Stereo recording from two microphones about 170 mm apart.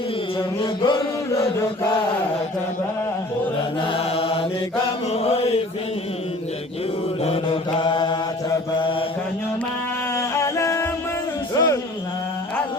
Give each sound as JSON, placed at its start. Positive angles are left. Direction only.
{"t": 0.3, "sound": "chant", "side_deg": 30}
{"t": 3.9, "sound": "mantra", "side_deg": 35}
{"t": 5.1, "sound": "chant", "side_deg": 35}
{"t": 7.3, "sound": "mantra", "side_deg": 30}
{"t": 10.2, "sound": "music", "side_deg": 15}
{"t": 11.5, "sound": "a sound", "side_deg": 20}